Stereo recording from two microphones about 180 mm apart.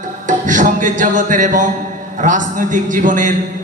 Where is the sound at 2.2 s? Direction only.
45° right (ahead or behind).